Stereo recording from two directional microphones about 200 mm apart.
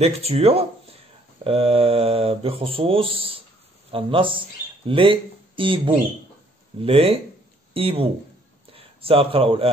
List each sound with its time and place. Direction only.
0.0 s speech: 30° right (ahead or behind)